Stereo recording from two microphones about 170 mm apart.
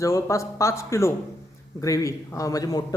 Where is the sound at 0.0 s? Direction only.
20° left (ahead or behind).